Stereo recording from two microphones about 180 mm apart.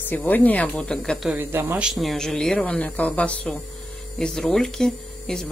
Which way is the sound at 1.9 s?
Centre (ahead or behind).